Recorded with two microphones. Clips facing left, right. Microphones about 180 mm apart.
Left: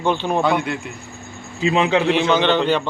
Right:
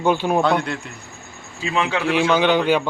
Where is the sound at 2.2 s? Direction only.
10° right (ahead or behind).